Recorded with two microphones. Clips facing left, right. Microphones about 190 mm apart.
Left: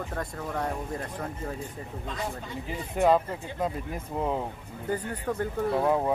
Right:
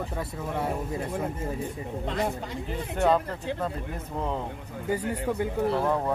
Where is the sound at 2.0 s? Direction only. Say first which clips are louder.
Right 6 dB; 70° right (ahead or behind).